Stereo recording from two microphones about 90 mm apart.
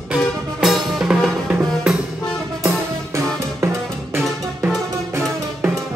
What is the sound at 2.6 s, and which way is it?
Music, 30° right (ahead or behind).